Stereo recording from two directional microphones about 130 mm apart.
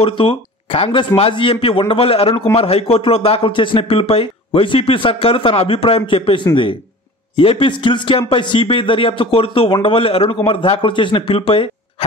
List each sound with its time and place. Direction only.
0.0 s a man's voice: 45° left (ahead or behind)